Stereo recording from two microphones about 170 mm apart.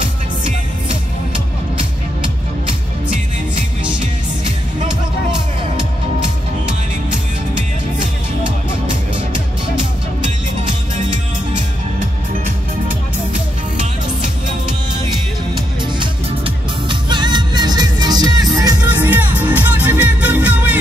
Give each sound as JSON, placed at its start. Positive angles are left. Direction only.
{"t": 16.0, "sound": "music", "side_deg": -30}
{"t": 18.9, "sound": "music", "side_deg": -10}